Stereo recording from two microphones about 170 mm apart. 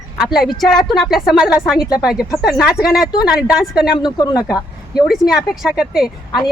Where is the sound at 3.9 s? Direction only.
25° left (ahead or behind).